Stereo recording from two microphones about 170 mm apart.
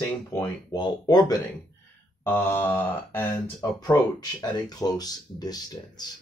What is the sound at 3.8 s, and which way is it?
Speech, 25° left (ahead or behind).